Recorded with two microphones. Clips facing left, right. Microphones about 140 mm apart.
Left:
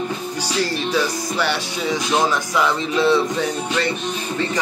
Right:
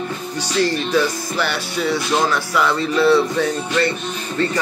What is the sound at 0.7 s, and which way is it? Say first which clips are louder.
Speech: right 3 dB; 10° left (ahead or behind).